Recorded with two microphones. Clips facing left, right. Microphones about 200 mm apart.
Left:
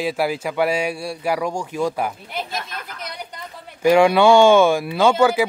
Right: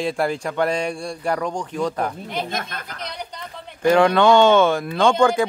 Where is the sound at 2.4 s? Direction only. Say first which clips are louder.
Right 2 dB; 50° right (ahead or behind).